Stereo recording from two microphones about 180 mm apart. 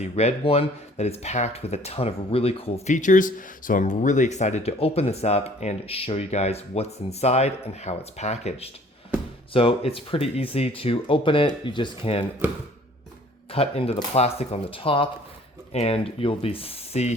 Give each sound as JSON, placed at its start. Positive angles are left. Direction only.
{"t": 0.0, "sound": "speech", "side_deg": 35}
{"t": 13.5, "sound": "speech", "side_deg": 30}